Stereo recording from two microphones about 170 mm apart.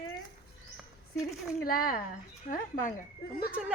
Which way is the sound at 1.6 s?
55° left (ahead or behind).